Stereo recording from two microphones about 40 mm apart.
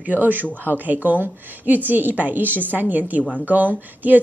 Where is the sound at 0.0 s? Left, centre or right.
Right.